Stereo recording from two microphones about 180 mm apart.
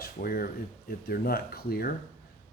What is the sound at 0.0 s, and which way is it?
Speech, 55° left (ahead or behind).